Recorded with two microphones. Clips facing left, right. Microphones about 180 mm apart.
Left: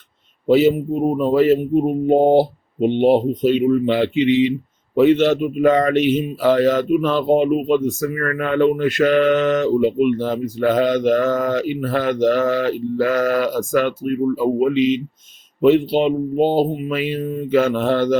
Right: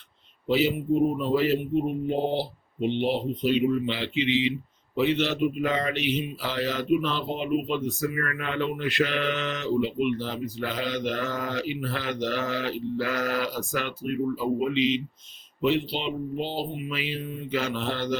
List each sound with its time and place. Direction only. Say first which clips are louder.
0.4 s speech: left 9 dB; 45° left (ahead or behind)